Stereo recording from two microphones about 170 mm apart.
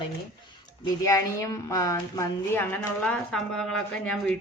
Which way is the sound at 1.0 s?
20° left (ahead or behind).